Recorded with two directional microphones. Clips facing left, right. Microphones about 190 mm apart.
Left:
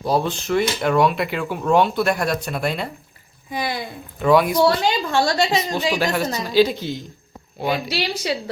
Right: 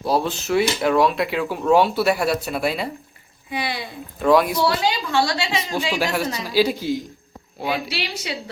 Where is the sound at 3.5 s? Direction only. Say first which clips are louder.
Left 1 dB; 45° left (ahead or behind).